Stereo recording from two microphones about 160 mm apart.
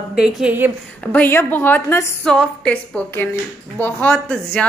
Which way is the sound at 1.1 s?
10° left (ahead or behind).